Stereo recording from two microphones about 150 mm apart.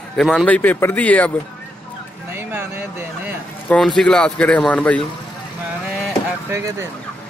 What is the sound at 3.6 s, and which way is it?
A man's voice, 5° left (ahead or behind).